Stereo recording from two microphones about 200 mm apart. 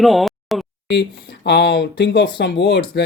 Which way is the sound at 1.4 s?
60° left (ahead or behind).